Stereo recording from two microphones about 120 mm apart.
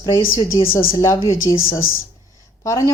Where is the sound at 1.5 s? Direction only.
35° left (ahead or behind).